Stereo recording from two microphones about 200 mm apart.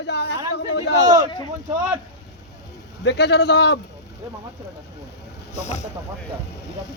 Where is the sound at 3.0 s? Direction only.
60° left (ahead or behind).